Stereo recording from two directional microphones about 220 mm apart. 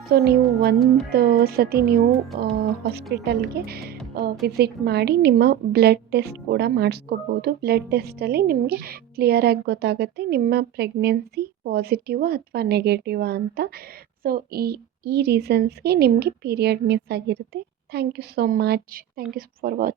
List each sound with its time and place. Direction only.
0.0 s a woman's voice: 45° right (ahead or behind)